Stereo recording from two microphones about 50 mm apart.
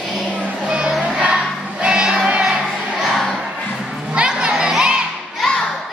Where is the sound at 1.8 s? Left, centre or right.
Centre.